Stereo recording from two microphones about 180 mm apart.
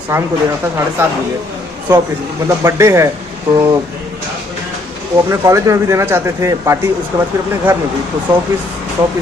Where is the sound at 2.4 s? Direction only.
15° right (ahead or behind).